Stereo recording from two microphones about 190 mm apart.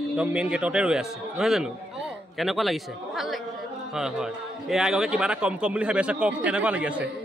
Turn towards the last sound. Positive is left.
turn(degrees=-5)  # may be behind; listen again after turning